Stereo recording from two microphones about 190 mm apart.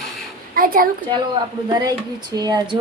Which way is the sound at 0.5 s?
50° right (ahead or behind).